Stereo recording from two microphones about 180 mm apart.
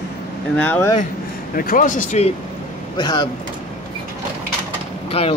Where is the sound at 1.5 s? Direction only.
50° left (ahead or behind).